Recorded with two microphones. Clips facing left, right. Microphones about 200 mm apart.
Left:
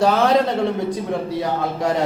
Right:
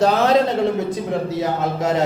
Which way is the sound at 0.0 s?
20° right (ahead or behind).